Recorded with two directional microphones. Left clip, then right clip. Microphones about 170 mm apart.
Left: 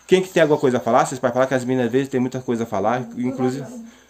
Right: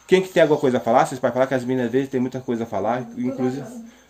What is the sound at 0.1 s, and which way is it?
Speech, 15° left (ahead or behind).